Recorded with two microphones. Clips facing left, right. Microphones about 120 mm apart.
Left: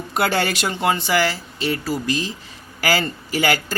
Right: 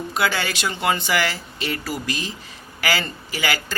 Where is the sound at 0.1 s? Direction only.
50° left (ahead or behind).